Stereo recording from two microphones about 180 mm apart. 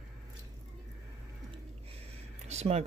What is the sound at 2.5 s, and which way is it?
Speech, 35° right (ahead or behind).